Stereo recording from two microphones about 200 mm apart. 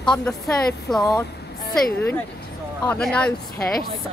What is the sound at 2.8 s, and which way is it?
Speech, 5° left (ahead or behind).